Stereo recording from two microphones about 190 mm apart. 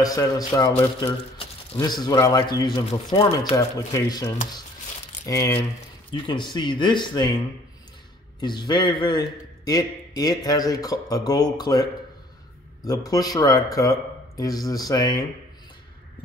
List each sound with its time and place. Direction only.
0.0 s a man's voice: 20° left (ahead or behind)